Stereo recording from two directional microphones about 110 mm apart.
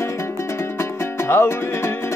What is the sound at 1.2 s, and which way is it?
Music, 20° left (ahead or behind).